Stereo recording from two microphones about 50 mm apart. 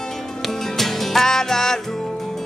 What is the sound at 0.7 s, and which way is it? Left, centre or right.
Music, centre.